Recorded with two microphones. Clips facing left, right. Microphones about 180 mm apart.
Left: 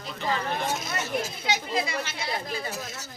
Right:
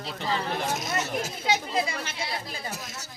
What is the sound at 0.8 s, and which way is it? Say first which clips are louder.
Speech: right 1 dB; 40° right (ahead or behind).